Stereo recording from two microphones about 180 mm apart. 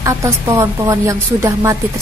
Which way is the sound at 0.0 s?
15° right (ahead or behind).